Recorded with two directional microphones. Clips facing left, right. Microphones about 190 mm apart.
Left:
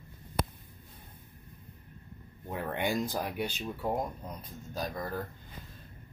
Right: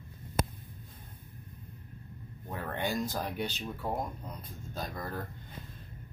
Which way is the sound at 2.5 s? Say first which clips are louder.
Left 2 dB; 15° left (ahead or behind).